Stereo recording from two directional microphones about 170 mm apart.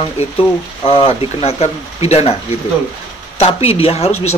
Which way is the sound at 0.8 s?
35° left (ahead or behind).